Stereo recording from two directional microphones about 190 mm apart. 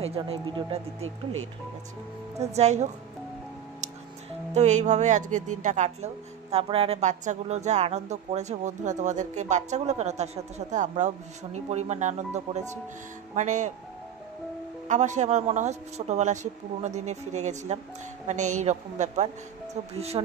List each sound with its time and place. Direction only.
0.0 s speech: 30° right (ahead or behind)
1.0 s speech: 90° right
2.3 s speech: 35° right (ahead or behind)
4.6 s speech: 40° right (ahead or behind)
14.9 s speech: 40° right (ahead or behind)